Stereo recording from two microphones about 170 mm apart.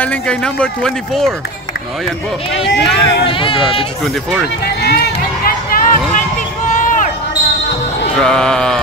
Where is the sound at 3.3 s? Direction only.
30° left (ahead or behind).